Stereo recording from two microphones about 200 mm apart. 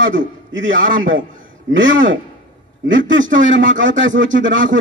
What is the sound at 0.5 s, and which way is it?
A man's voice, 75° right (ahead or behind).